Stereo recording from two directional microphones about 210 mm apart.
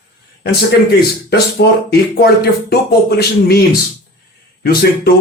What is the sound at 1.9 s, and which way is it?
Speech, 50° left (ahead or behind).